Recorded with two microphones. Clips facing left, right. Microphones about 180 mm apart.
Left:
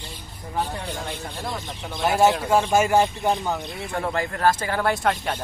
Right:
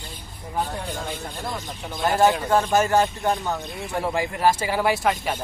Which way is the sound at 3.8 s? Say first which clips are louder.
Right 1 dB; 10° right (ahead or behind).